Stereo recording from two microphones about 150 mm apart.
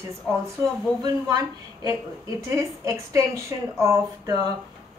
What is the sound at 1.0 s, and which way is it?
A woman's voice, 25° right (ahead or behind).